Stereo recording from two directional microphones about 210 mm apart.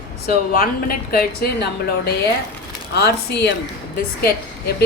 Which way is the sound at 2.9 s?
50° left (ahead or behind).